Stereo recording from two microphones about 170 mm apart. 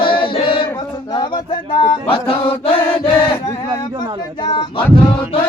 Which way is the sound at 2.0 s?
35° left (ahead or behind).